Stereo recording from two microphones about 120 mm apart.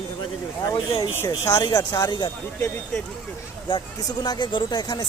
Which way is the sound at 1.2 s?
30° left (ahead or behind).